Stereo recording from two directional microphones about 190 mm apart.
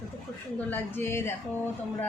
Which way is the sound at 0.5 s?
10° left (ahead or behind).